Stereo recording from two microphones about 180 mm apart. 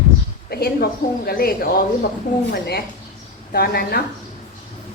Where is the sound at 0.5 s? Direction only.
60° left (ahead or behind).